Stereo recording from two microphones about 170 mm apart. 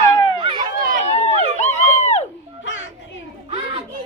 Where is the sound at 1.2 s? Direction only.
40° left (ahead or behind).